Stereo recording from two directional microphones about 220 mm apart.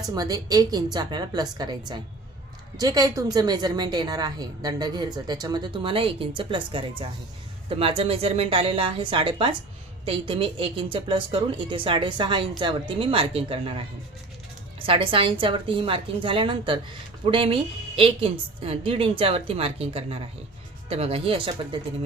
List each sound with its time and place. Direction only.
0.1 s a woman's voice: 15° right (ahead or behind)